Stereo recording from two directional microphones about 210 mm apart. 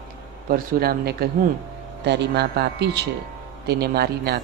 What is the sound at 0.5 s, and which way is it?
Speech, 45° right (ahead or behind).